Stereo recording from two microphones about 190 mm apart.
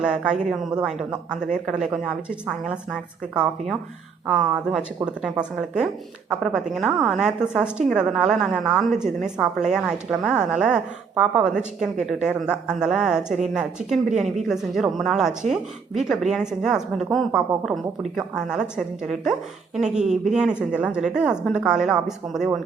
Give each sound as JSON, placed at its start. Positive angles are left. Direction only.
{"t": 0.0, "sound": "a woman's voice", "side_deg": -5}
{"t": 4.3, "sound": "a woman's voice", "side_deg": -5}
{"t": 20.0, "sound": "speech", "side_deg": -40}
{"t": 20.3, "sound": "a woman's voice", "side_deg": -5}